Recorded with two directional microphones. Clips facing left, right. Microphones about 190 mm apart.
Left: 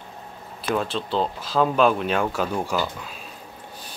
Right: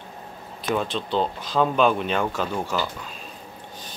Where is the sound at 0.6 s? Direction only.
Centre (ahead or behind).